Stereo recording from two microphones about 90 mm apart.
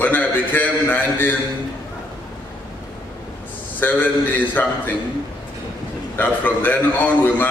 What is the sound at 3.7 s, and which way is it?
Speech, 20° left (ahead or behind).